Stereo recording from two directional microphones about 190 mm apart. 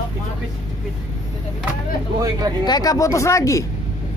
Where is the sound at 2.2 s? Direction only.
20° right (ahead or behind).